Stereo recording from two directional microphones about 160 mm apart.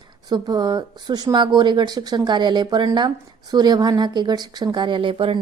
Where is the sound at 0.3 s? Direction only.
25° right (ahead or behind).